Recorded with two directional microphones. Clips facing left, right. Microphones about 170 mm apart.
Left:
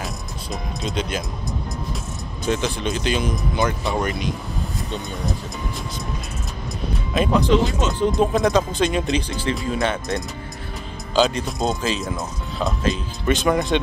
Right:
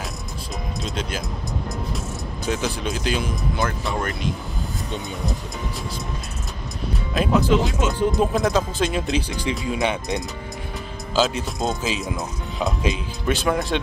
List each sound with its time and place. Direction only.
0.8 s speech: 5° right (ahead or behind)
2.4 s speech: 5° right (ahead or behind)
7.2 s speech: 5° right (ahead or behind)
9.3 s speech: 15° right (ahead or behind)
11.1 s speech: centre (ahead or behind)